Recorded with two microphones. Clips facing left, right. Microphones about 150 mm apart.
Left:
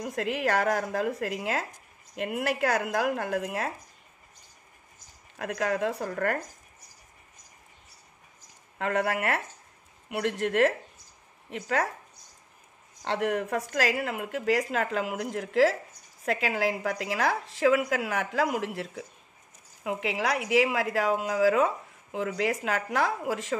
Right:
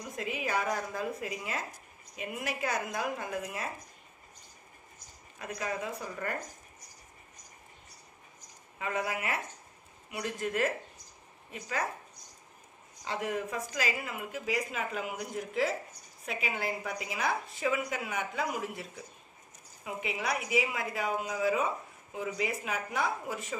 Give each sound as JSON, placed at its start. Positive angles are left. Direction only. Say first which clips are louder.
{"t": 0.0, "sound": "a woman's voice", "louder": "left 7 dB", "side_deg": 70}
{"t": 5.4, "sound": "a woman's voice", "louder": "left 8 dB", "side_deg": 75}
{"t": 8.7, "sound": "a woman's voice", "louder": "left 6 dB", "side_deg": 65}
{"t": 13.0, "sound": "a woman's voice", "louder": "left 6 dB", "side_deg": 70}